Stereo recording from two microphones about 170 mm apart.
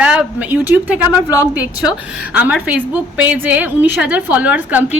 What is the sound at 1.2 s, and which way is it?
Speech, 20° left (ahead or behind).